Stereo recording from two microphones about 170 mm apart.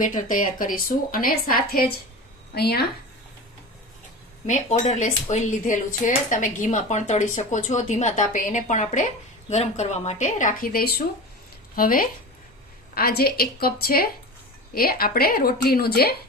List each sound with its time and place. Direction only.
0.0 s a woman's voice: 50° left (ahead or behind); by 2.8 s 70° left (ahead or behind)
4.4 s a woman's voice: 45° left (ahead or behind); by 16.1 s 65° left (ahead or behind)